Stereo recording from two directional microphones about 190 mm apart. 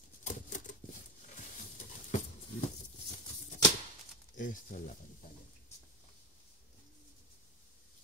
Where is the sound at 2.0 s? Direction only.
40° left (ahead or behind).